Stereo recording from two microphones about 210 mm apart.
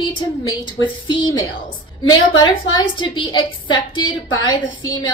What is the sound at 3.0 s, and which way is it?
A woman's voice, 20° left (ahead or behind).